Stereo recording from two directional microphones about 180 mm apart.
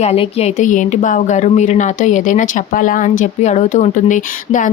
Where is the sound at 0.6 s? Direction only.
45° left (ahead or behind).